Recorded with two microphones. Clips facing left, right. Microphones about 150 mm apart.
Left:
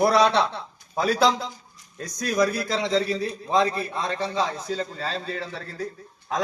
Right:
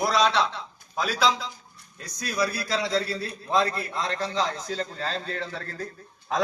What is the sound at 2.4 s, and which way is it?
A man's voice, 20° left (ahead or behind).